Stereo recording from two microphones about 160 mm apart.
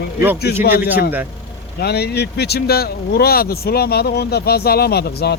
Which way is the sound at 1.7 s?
85° left.